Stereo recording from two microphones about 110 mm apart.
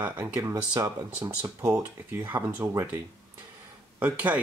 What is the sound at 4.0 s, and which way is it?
Speech, 15° right (ahead or behind).